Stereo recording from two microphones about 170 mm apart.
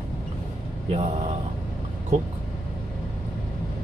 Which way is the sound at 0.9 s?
40° right (ahead or behind).